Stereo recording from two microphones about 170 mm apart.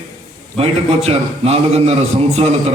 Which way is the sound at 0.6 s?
35° right (ahead or behind).